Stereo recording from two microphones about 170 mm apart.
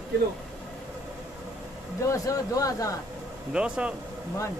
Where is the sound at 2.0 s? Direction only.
20° left (ahead or behind).